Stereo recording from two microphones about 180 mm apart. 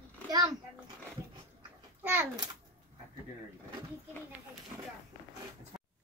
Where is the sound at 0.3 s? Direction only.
20° right (ahead or behind).